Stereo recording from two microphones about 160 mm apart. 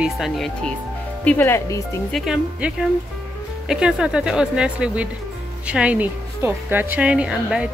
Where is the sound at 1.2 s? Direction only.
15° left (ahead or behind).